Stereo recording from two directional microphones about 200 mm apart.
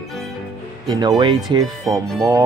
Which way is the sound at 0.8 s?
20° right (ahead or behind).